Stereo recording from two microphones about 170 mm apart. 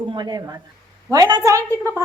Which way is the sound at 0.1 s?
25° right (ahead or behind).